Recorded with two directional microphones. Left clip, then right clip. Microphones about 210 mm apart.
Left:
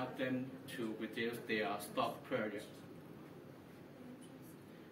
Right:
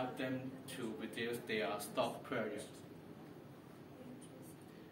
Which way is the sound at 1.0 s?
15° right (ahead or behind).